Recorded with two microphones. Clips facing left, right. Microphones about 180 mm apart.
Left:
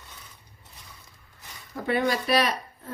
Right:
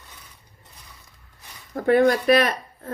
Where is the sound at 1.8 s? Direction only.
50° right (ahead or behind).